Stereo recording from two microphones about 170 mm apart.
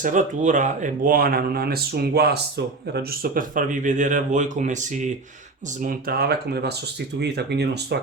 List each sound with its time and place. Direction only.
0.0 s speech: 50° right (ahead or behind); by 2.4 s 70° right (ahead or behind)
2.9 s speech: 60° right (ahead or behind)
5.8 s speech: 60° right (ahead or behind); by 7.9 s 75° right (ahead or behind)